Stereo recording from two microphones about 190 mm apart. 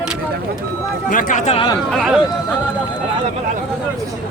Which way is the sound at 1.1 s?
40° left (ahead or behind).